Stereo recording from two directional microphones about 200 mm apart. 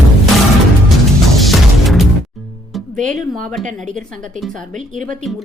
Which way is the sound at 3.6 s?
40° right (ahead or behind).